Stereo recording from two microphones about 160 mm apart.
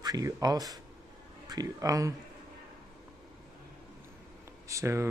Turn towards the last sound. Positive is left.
turn(degrees=-15)  # may be behind; listen again after turning